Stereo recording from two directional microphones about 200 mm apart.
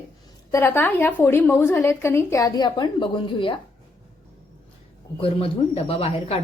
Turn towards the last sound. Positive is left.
turn(degrees=30)  # may be behind; listen again after turning